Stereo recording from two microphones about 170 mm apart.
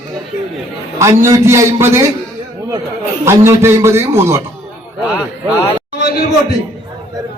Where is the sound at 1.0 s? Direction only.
15° right (ahead or behind).